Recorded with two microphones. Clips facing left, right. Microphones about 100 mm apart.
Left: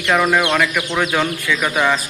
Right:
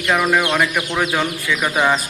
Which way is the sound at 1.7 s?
20° right (ahead or behind).